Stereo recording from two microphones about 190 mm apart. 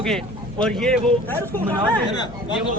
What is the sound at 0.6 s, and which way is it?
Speech, 5° left (ahead or behind).